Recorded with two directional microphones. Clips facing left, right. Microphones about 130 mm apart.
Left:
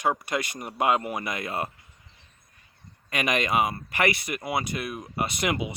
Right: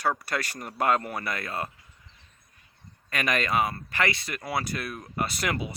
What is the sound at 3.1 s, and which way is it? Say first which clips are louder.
Speech: left 1 dB; 15° left (ahead or behind).